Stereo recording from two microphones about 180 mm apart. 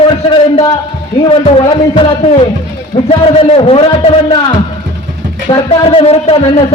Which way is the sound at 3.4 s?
35° left (ahead or behind).